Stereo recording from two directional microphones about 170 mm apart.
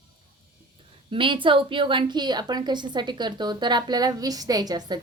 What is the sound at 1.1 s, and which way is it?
Speech, 30° right (ahead or behind).